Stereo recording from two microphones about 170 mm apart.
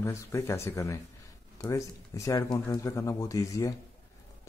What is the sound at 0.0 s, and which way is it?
Speech, 15° left (ahead or behind).